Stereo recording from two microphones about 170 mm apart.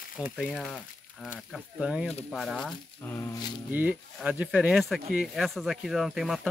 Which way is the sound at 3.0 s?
15° left (ahead or behind).